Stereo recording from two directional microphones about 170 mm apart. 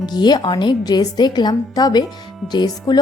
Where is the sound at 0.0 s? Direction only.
25° left (ahead or behind).